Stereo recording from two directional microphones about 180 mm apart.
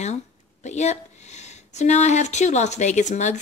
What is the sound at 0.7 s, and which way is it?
Speech, 40° left (ahead or behind).